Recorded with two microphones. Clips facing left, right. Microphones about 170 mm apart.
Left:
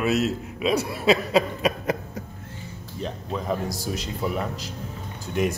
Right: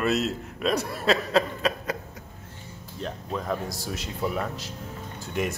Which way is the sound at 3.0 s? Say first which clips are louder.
Left 2 dB; 5° left (ahead or behind).